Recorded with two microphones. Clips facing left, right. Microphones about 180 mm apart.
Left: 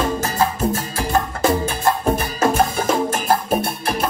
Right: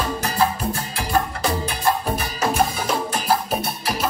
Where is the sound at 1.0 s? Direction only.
45° left (ahead or behind).